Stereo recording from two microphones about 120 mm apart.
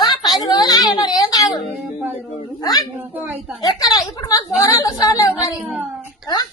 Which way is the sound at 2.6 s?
30° left (ahead or behind).